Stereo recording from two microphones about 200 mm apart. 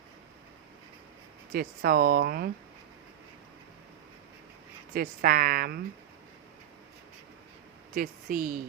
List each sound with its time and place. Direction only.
1.5 s speech: 45° right (ahead or behind)
4.9 s speech: 45° right (ahead or behind)
7.9 s speech: 45° right (ahead or behind)